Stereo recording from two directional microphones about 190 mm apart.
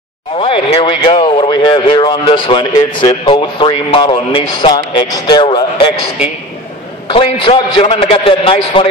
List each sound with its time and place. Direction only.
0.4 s speech: 30° left (ahead or behind)
7.1 s speech: 30° left (ahead or behind)